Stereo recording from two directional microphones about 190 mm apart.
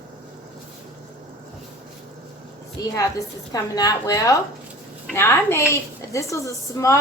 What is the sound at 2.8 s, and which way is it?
A woman's voice, 20° left (ahead or behind).